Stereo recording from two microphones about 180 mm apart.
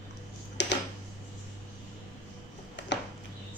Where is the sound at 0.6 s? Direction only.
75° left (ahead or behind).